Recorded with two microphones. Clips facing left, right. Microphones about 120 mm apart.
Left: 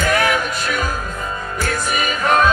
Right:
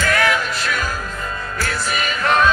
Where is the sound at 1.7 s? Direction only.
50° left (ahead or behind).